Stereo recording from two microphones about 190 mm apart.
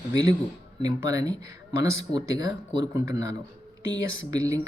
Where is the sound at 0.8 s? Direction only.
20° right (ahead or behind).